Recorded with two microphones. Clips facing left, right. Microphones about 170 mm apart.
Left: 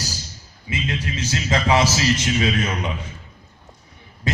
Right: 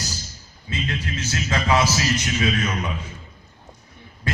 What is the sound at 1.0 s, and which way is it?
Music, 20° left (ahead or behind).